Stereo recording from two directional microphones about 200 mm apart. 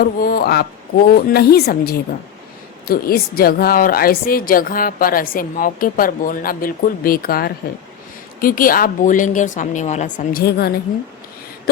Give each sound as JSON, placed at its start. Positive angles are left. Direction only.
{"t": 0.0, "sound": "a woman's voice", "side_deg": 50}
{"t": 2.8, "sound": "a woman's voice", "side_deg": 50}
{"t": 10.4, "sound": "a woman's voice", "side_deg": 55}